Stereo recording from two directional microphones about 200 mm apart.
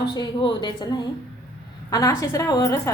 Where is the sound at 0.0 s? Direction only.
20° left (ahead or behind).